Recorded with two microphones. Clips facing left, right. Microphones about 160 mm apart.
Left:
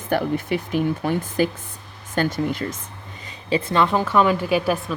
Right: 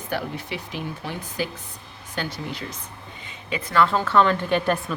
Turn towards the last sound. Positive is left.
turn(degrees=5)  # may be behind; listen again after turning